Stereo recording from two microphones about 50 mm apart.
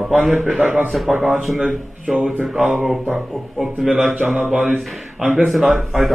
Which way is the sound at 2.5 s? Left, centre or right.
Centre.